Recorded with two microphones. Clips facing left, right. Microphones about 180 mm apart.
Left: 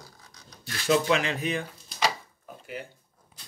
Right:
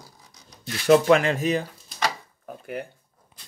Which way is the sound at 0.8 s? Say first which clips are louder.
Right 7 dB; 55° right (ahead or behind).